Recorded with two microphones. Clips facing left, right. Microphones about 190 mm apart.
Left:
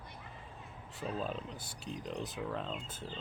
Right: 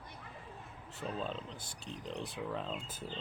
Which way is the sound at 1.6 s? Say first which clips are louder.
Left 3 dB; 30° right (ahead or behind).